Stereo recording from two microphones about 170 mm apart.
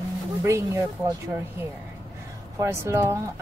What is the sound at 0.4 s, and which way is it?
Speech, 15° right (ahead or behind).